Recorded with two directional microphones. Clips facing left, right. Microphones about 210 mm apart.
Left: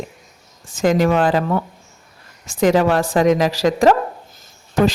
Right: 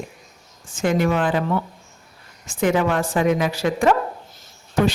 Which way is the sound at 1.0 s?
40° left (ahead or behind).